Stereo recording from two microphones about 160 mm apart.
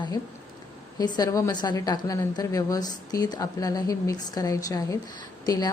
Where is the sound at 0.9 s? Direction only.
25° left (ahead or behind).